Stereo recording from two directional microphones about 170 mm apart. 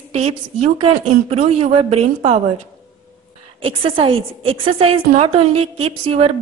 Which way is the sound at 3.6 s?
30° right (ahead or behind).